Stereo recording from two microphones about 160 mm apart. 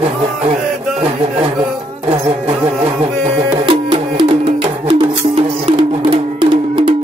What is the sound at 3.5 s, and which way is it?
Music, 30° right (ahead or behind).